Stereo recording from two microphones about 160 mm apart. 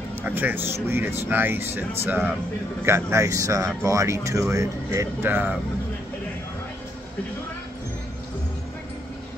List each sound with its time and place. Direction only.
0.2 s speech: 10° right (ahead or behind)